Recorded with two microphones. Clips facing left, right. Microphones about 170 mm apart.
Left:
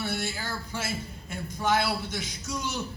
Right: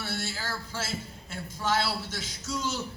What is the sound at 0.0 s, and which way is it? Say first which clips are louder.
A man's voice: left 3 dB; 15° left (ahead or behind).